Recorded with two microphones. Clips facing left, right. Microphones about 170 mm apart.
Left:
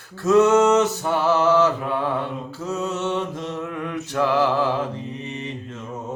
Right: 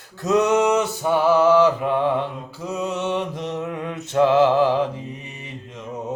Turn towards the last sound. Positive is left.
turn(degrees=-20)  # may be behind; listen again after turning